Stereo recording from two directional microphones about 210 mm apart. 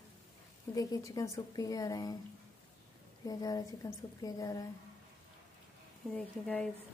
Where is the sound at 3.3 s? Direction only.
15° left (ahead or behind).